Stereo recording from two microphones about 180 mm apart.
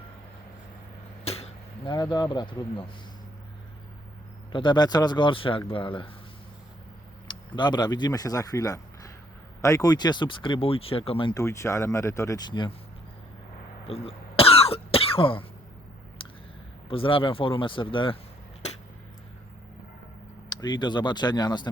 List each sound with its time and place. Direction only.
1.2 s speech: 35° left (ahead or behind)
4.5 s speech: 25° left (ahead or behind)
7.3 s speech: 25° left (ahead or behind)
13.8 s cough: 35° left (ahead or behind)
16.9 s speech: 30° left (ahead or behind)
20.5 s speech: 25° left (ahead or behind)